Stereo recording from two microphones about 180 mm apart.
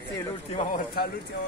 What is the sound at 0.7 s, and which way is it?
Speech, 50° left (ahead or behind).